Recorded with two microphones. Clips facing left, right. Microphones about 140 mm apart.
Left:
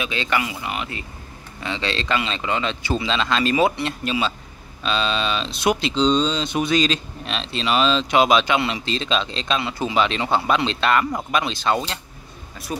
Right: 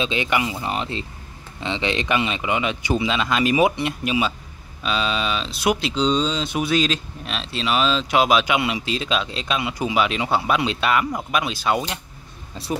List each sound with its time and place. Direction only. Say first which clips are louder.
0.0 s speech: right 2 dB; 20° right (ahead or behind)
0.5 s speech: right 3 dB; 30° right (ahead or behind)
1.6 s speech: right 2 dB; 20° right (ahead or behind)
12.6 s speech: right 4 dB; 30° right (ahead or behind)